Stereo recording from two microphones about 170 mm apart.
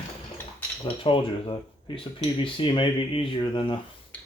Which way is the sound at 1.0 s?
30° left (ahead or behind).